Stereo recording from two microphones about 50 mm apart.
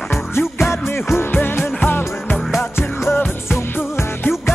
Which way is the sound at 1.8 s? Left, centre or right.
Left.